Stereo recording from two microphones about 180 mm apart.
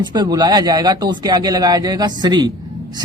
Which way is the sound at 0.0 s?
25° right (ahead or behind).